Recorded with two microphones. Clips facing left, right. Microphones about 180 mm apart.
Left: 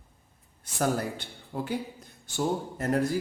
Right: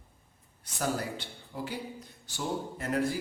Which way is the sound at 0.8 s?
50° left (ahead or behind).